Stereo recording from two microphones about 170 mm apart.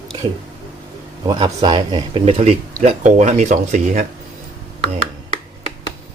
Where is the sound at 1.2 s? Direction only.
25° right (ahead or behind); by 4.0 s 50° right (ahead or behind).